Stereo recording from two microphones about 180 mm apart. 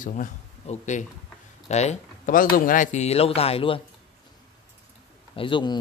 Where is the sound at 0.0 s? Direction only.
45° left (ahead or behind).